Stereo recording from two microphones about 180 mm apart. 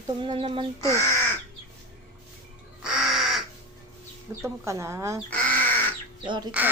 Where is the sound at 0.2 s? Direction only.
30° right (ahead or behind).